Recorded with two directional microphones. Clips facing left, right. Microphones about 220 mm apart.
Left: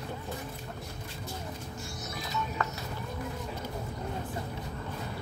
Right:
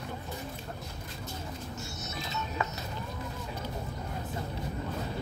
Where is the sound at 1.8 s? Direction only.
25° right (ahead or behind).